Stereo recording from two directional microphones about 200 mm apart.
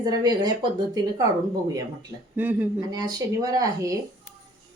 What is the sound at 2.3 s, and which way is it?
A woman's voice, 10° right (ahead or behind).